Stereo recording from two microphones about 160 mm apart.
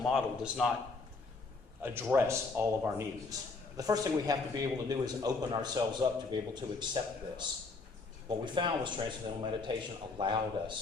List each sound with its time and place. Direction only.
0.0 s speech: centre (ahead or behind)
1.8 s a man's voice: 15° right (ahead or behind); by 10.8 s 30° right (ahead or behind)